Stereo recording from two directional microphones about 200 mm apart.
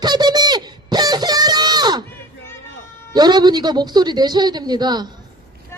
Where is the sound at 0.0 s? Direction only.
20° right (ahead or behind).